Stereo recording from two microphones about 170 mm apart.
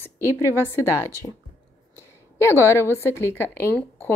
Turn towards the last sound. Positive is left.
turn(degrees=15)  # may be behind; listen again after turning